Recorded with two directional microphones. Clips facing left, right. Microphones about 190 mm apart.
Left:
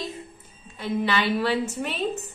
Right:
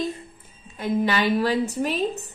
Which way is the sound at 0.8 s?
45° right (ahead or behind).